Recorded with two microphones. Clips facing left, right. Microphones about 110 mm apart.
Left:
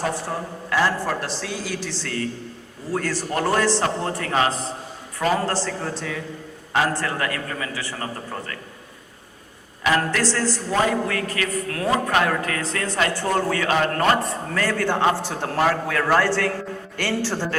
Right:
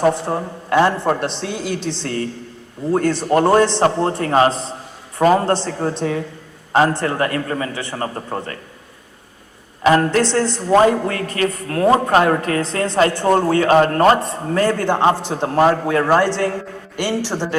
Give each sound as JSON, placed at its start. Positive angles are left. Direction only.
{"t": 0.1, "sound": "a man's voice", "side_deg": -25}
{"t": 9.8, "sound": "a man's voice", "side_deg": -35}
{"t": 10.2, "sound": "a man's voice", "side_deg": -20}
{"t": 10.7, "sound": "a man's voice", "side_deg": -35}